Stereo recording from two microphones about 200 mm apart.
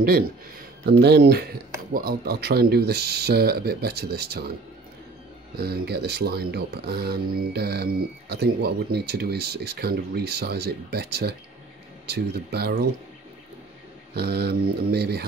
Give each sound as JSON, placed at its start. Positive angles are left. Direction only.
{"t": 0.0, "sound": "speech", "side_deg": -50}
{"t": 5.6, "sound": "speech", "side_deg": -55}
{"t": 14.1, "sound": "speech", "side_deg": -55}